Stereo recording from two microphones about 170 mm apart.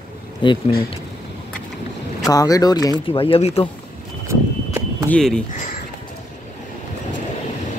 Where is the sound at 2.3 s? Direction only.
20° left (ahead or behind); by 3.6 s 35° left (ahead or behind).